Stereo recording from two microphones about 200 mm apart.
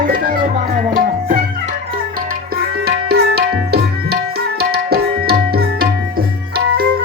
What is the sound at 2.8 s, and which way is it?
Tabla, 55° right (ahead or behind).